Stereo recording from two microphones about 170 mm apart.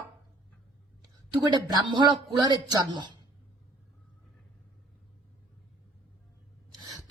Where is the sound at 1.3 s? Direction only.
25° right (ahead or behind).